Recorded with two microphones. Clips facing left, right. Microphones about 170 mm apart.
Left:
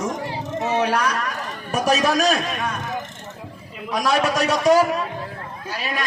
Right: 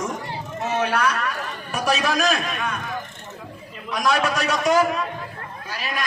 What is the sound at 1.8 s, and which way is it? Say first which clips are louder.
Speech: left 3 dB; 40° left (ahead or behind).